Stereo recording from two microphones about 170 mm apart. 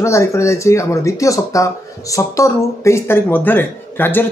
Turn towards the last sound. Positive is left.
turn(degrees=10)  # may be behind; listen again after turning